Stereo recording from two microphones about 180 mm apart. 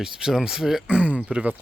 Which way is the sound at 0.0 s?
5° right (ahead or behind).